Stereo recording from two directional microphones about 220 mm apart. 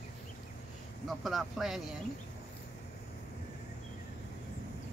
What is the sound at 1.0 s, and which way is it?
Speech, centre (ahead or behind).